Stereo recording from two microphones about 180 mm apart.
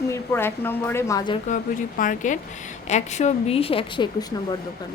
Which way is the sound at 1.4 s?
45° left (ahead or behind).